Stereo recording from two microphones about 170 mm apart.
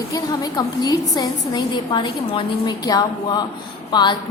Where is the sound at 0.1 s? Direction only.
25° left (ahead or behind).